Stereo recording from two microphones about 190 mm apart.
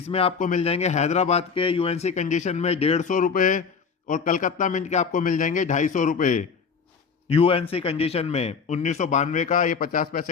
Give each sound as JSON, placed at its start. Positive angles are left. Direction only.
{"t": 0.1, "sound": "a man's voice", "side_deg": 30}
{"t": 0.3, "sound": "a man's voice", "side_deg": 40}
{"t": 7.3, "sound": "speech", "side_deg": 30}